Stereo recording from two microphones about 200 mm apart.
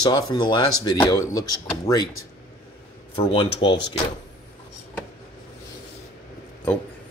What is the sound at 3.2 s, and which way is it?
Speech, 25° left (ahead or behind).